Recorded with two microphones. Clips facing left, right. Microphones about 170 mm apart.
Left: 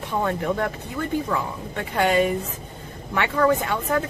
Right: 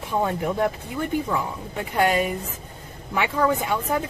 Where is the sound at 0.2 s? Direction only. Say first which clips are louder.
Right 1 dB; 10° right (ahead or behind).